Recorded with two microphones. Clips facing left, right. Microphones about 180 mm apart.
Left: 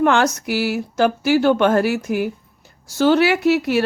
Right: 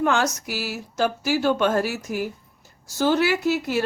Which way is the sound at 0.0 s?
65° left (ahead or behind).